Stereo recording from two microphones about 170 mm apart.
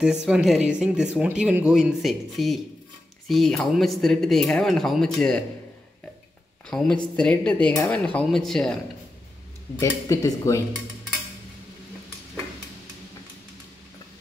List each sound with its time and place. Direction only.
0.3 s speech: 5° right (ahead or behind)
6.7 s speech: 5° left (ahead or behind)
9.8 s speech: 20° left (ahead or behind)